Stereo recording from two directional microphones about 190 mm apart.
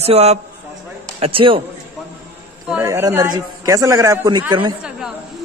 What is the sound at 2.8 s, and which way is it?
A man's voice, 15° right (ahead or behind).